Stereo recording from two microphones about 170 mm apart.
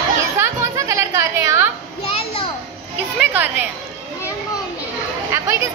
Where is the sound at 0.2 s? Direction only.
20° right (ahead or behind).